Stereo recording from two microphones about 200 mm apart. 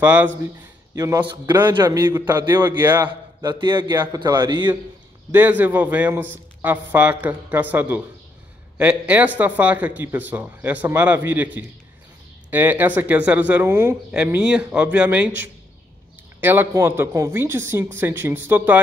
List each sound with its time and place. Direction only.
0.0 s a man's voice: 10° right (ahead or behind)
5.3 s speech: 10° right (ahead or behind)